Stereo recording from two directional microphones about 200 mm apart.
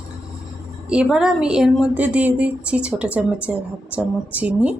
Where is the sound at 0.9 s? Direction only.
5° right (ahead or behind).